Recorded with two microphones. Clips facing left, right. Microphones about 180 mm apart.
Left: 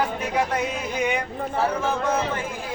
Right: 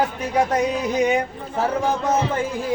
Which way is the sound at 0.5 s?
40° right (ahead or behind).